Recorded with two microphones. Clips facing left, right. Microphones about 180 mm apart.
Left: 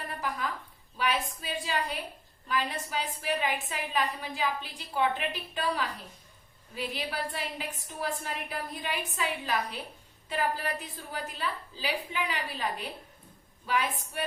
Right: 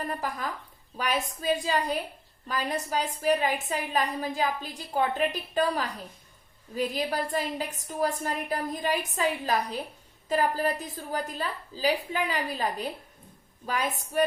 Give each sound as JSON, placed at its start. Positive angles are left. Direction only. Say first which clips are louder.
{"t": 0.9, "sound": "a woman's voice", "louder": "right 1 dB", "side_deg": -45}
{"t": 13.7, "sound": "a woman's voice", "louder": "even", "side_deg": -45}